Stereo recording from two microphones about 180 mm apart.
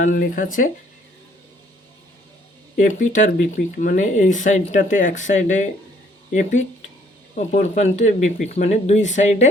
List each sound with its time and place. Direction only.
0.0 s speech: 50° left (ahead or behind)
2.7 s speech: 45° left (ahead or behind)
7.3 s speech: 45° left (ahead or behind)